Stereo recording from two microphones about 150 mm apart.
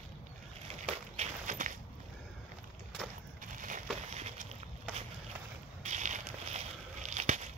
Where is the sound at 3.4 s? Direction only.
60° right (ahead or behind).